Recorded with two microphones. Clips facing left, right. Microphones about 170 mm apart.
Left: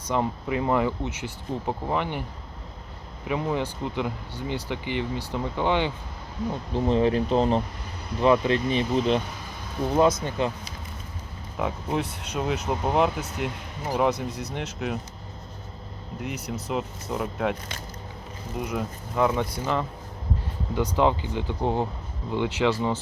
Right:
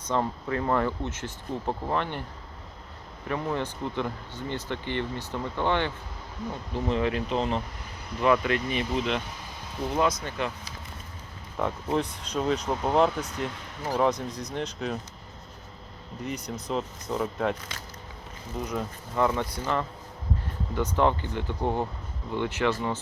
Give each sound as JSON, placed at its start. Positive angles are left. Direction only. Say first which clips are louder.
{"t": 0.0, "sound": "speech", "louder": "left 2 dB", "side_deg": 10}
{"t": 3.2, "sound": "speech", "louder": "left 3 dB", "side_deg": 10}
{"t": 6.7, "sound": "speech", "louder": "left 5 dB", "side_deg": 30}
{"t": 11.5, "sound": "speech", "louder": "even", "side_deg": 5}
{"t": 16.2, "sound": "speech", "louder": "left 1 dB", "side_deg": 5}
{"t": 18.6, "sound": "speech", "louder": "left 2 dB", "side_deg": 5}